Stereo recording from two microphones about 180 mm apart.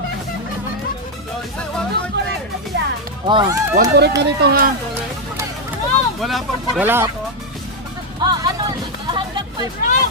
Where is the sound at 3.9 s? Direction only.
70° right (ahead or behind).